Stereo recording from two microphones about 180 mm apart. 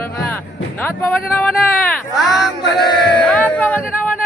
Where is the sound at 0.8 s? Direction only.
10° left (ahead or behind).